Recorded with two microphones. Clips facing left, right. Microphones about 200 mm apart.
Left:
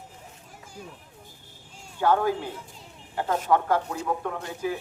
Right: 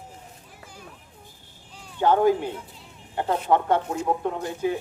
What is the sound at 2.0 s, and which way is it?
A man's voice, 20° right (ahead or behind).